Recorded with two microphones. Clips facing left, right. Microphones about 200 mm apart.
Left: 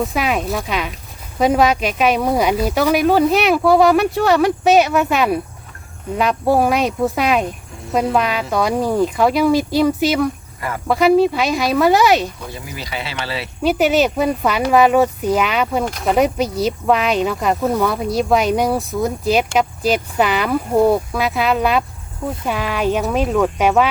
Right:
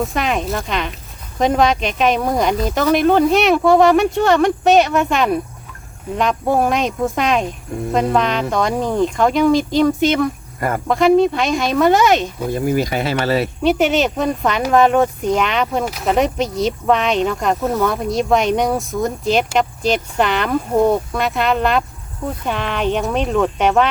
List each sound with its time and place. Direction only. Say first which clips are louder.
0.0 s speech: even; 5° left (ahead or behind)
12.5 s speech: right 12 dB; 50° right (ahead or behind)
13.6 s speech: left 3 dB; centre (ahead or behind)